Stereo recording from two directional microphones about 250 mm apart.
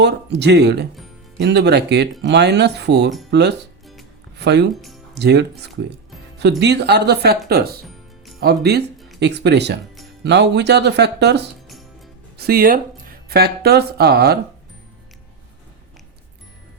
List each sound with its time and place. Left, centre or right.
0.0 s speech: right
4.7 s speech: centre
5.1 s speech: right
9.0 s music: centre
9.2 s speech: right